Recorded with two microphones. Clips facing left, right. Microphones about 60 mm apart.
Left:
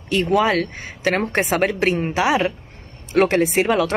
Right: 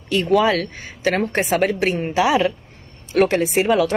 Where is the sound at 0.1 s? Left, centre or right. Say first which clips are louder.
Right 1 dB; left.